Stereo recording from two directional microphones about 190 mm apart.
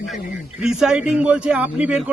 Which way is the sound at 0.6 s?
5° right (ahead or behind).